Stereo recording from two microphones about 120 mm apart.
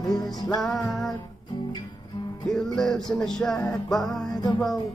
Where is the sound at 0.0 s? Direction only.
35° left (ahead or behind).